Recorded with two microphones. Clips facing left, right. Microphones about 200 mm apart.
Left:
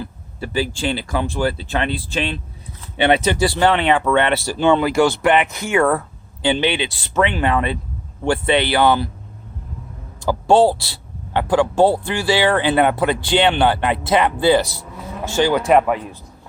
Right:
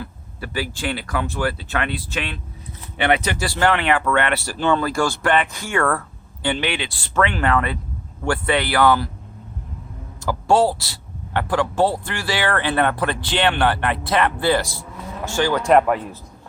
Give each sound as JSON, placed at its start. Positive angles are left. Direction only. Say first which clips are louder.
{"t": 0.0, "sound": "speech", "louder": "left 4 dB", "side_deg": 25}
{"t": 10.2, "sound": "speech", "louder": "left 4 dB", "side_deg": 25}
{"t": 11.3, "sound": "a man's voice", "louder": "left 4 dB", "side_deg": 15}
{"t": 11.7, "sound": "speech", "louder": "left 5 dB", "side_deg": 25}
{"t": 12.5, "sound": "speech", "louder": "left 1 dB", "side_deg": 15}
{"t": 15.2, "sound": "moo", "louder": "left 3 dB", "side_deg": 25}
{"t": 15.6, "sound": "speech", "louder": "right 3 dB", "side_deg": 5}